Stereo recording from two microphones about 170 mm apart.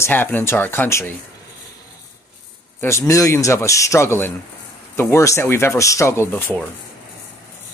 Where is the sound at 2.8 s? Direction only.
15° left (ahead or behind).